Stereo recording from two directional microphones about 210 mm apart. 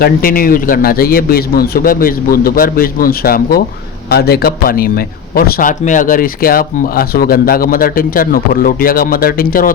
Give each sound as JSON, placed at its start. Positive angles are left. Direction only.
{"t": 0.0, "sound": "speech", "side_deg": 45}